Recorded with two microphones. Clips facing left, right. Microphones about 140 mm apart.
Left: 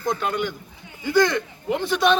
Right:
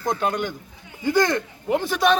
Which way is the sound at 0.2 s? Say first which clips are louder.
Right 1 dB; 45° right (ahead or behind).